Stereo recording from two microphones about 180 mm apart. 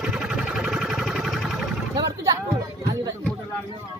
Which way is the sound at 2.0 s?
20° right (ahead or behind).